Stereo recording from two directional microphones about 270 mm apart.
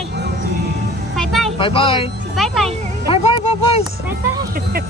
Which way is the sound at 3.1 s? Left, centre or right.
Left.